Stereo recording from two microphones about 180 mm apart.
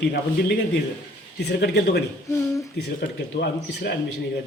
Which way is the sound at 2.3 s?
15° left (ahead or behind).